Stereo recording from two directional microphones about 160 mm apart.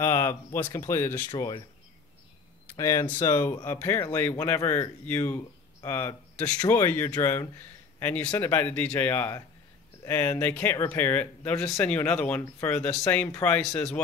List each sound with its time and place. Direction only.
0.0 s speech: 15° left (ahead or behind)
1.3 s speech: 30° left (ahead or behind)
2.7 s speech: 20° left (ahead or behind)